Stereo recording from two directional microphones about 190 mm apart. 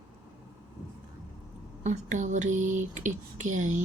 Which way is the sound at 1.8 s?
40° right (ahead or behind).